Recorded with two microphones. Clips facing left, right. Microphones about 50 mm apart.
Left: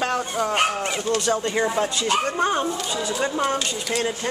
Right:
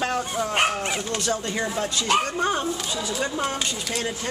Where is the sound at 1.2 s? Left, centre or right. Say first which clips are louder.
Left 4 dB; centre.